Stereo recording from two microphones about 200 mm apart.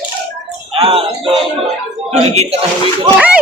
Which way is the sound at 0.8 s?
25° right (ahead or behind).